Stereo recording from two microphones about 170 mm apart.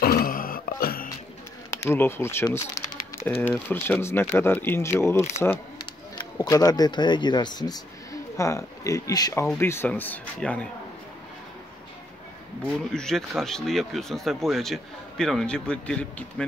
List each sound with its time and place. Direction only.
0.0 s grunt: 60° left (ahead or behind)
1.7 s speech: 15° left (ahead or behind)
12.9 s speech: 5° left (ahead or behind)